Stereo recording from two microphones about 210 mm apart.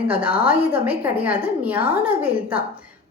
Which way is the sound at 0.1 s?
5° right (ahead or behind).